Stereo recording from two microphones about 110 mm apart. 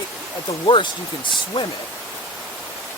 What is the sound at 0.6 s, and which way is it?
Speech, 50° left (ahead or behind).